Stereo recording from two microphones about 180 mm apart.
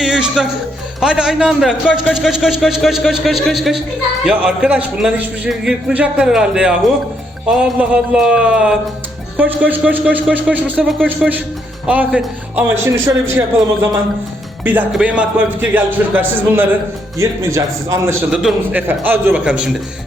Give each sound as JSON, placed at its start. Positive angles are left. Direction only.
{"t": 0.0, "sound": "music", "side_deg": -5}
{"t": 0.9, "sound": "speech", "side_deg": -5}
{"t": 14.6, "sound": "speech", "side_deg": -10}